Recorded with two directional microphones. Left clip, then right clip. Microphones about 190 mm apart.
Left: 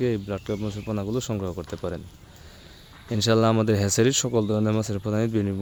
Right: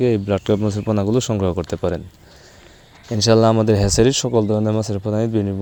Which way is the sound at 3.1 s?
20° right (ahead or behind).